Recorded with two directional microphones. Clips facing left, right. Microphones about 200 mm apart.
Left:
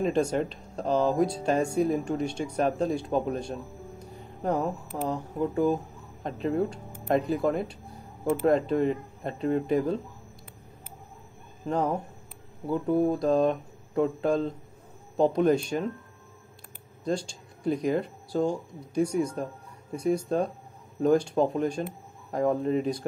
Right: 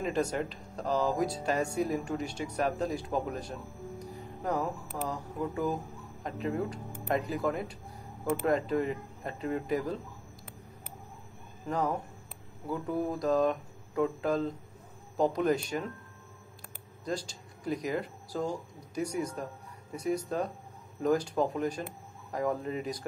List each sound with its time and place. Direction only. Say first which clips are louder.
0.0 s speech: left 5 dB; 25° left (ahead or behind)
11.6 s speech: left 4 dB; 25° left (ahead or behind)
17.0 s speech: left 6 dB; 25° left (ahead or behind)